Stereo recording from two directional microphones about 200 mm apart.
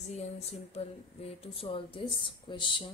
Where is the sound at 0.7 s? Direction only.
30° left (ahead or behind).